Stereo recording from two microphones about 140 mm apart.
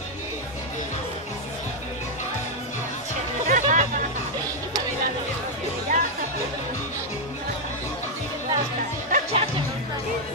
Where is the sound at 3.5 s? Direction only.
60° right (ahead or behind).